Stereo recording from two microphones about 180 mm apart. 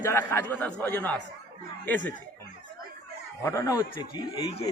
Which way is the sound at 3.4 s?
15° left (ahead or behind).